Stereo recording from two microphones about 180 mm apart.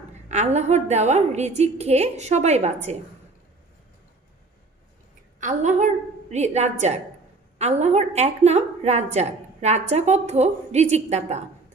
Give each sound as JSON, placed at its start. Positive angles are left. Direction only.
{"t": 0.3, "sound": "a woman's voice", "side_deg": -40}
{"t": 5.4, "sound": "a woman's voice", "side_deg": -40}